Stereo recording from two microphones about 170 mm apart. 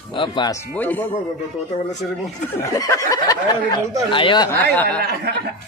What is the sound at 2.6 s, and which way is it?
Speech, 20° left (ahead or behind).